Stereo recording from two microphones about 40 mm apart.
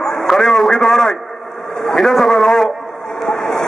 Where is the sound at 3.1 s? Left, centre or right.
Centre.